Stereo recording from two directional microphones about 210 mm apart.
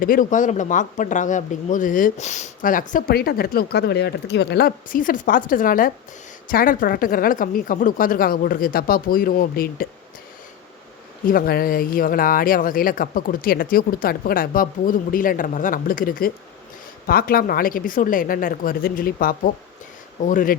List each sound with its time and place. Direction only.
0.0 s speech: 40° left (ahead or behind)
11.3 s speech: 45° left (ahead or behind)